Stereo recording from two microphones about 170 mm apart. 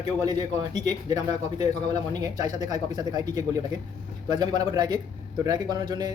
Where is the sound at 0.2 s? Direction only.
25° right (ahead or behind).